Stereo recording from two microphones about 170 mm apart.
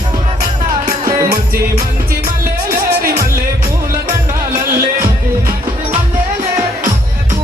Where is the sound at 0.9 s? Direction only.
55° right (ahead or behind).